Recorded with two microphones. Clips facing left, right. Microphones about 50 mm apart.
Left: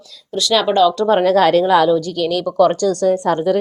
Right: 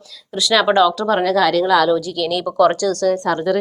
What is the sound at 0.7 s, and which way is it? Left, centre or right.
Speech, right.